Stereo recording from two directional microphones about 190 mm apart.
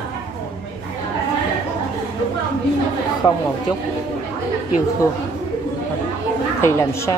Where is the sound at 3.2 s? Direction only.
25° left (ahead or behind).